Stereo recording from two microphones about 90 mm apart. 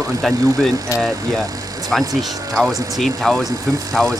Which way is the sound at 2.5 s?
Centre (ahead or behind).